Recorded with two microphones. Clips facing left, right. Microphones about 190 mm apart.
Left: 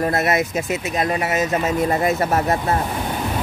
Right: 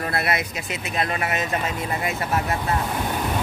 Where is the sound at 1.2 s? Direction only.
40° left (ahead or behind).